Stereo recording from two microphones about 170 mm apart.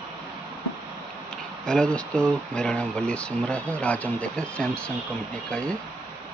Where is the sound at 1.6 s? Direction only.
5° left (ahead or behind).